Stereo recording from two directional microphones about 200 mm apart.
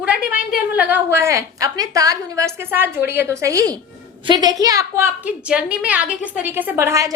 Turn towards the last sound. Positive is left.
turn(degrees=-15)  # may be behind; listen again after turning